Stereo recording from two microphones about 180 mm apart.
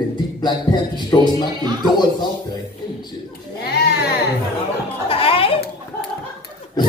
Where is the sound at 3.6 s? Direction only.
65° left (ahead or behind).